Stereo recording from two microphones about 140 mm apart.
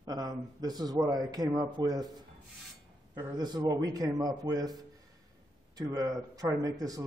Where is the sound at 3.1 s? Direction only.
30° right (ahead or behind).